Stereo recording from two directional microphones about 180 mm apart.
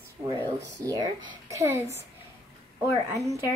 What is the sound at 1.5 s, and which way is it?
Speech, 15° right (ahead or behind).